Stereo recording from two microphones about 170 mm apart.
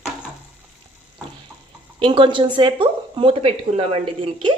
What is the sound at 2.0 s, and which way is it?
A woman's voice, 30° right (ahead or behind).